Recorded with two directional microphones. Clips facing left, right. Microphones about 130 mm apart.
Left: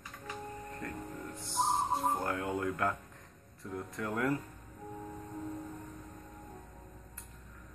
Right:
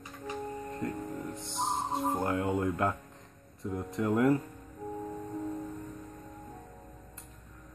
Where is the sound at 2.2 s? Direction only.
20° right (ahead or behind).